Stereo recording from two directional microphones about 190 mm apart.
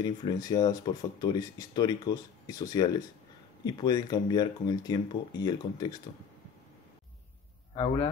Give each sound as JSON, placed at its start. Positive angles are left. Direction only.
{"t": 0.0, "sound": "speech", "side_deg": 20}
{"t": 7.7, "sound": "speech", "side_deg": 25}